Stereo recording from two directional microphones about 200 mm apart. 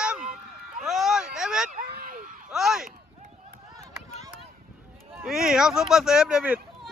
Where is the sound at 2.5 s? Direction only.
Centre (ahead or behind).